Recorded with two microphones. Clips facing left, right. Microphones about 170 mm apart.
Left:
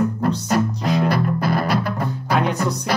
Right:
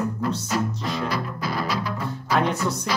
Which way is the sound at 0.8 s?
45° left (ahead or behind).